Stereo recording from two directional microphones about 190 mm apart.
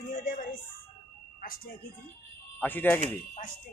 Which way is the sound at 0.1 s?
45° left (ahead or behind).